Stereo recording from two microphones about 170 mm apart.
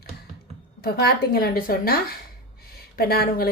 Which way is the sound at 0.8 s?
60° left (ahead or behind).